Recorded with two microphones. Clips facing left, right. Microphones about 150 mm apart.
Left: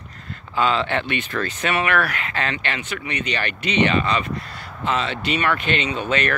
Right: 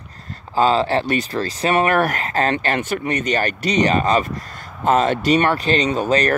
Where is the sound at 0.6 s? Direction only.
35° right (ahead or behind).